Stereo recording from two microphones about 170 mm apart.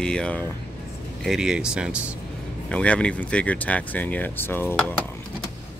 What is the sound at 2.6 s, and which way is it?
Speech, 5° left (ahead or behind).